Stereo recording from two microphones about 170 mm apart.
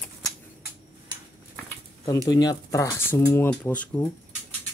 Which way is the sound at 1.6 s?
20° left (ahead or behind).